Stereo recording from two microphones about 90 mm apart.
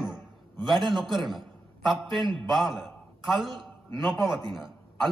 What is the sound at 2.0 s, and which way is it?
Speech, 60° right (ahead or behind).